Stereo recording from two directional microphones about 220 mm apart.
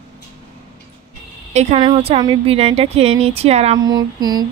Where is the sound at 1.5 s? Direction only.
30° right (ahead or behind).